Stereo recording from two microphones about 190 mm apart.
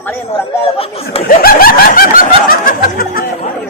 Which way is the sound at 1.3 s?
50° left (ahead or behind).